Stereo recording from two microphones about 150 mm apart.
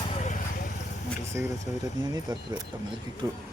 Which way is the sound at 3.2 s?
20° right (ahead or behind).